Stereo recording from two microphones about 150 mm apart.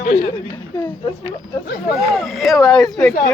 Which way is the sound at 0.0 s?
90° left.